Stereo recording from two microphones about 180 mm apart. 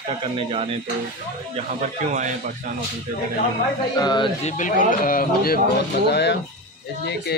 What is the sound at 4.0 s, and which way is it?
Speech, 25° left (ahead or behind).